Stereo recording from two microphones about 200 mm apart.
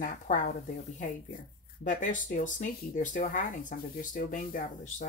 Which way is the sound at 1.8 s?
40° left (ahead or behind).